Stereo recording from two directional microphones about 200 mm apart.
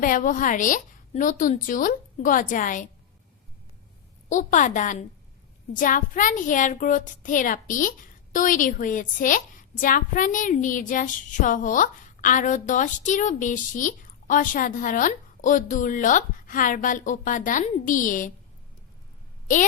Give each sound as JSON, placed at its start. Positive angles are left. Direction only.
{"t": 0.0, "sound": "a woman's voice", "side_deg": 40}
{"t": 4.3, "sound": "a woman's voice", "side_deg": 40}